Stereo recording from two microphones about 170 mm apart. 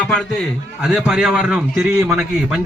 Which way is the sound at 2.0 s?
Centre (ahead or behind).